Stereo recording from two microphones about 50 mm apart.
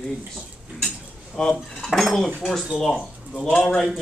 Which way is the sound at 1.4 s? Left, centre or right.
Centre.